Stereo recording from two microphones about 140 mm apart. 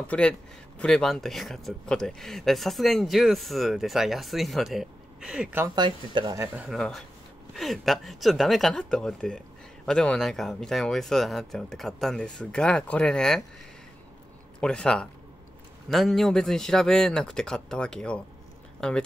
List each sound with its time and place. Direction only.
0.0 s speech: 10° left (ahead or behind); by 5.7 s 10° right (ahead or behind)
5.8 s speech: 35° right (ahead or behind)
6.3 s speech: 15° right (ahead or behind)
6.8 s speech: centre (ahead or behind)
14.6 s speech: 5° left (ahead or behind)